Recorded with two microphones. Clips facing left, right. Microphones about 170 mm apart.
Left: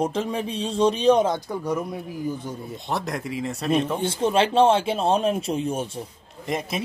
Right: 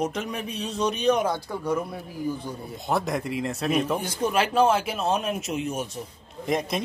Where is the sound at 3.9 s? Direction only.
25° left (ahead or behind).